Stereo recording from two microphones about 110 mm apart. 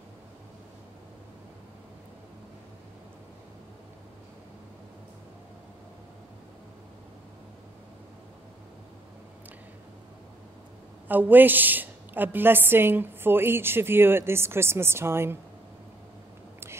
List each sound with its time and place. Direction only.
11.1 s a woman's voice: 15° right (ahead or behind)